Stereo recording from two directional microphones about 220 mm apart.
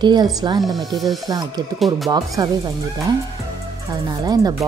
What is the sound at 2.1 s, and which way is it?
Speech, 20° right (ahead or behind).